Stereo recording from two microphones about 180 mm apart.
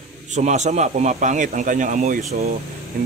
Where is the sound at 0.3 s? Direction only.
40° right (ahead or behind).